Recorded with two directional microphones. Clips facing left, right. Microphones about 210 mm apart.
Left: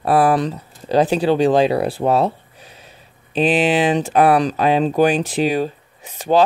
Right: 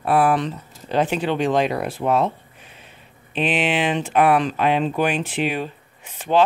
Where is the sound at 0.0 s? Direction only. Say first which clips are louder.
Left 3 dB; 35° left (ahead or behind).